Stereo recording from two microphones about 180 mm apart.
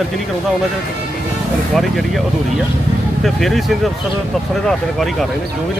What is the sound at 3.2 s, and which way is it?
Speech, centre (ahead or behind).